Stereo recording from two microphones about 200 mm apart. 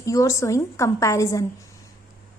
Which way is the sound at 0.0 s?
15° left (ahead or behind).